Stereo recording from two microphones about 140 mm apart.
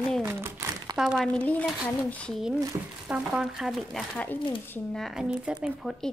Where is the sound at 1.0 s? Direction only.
5° right (ahead or behind).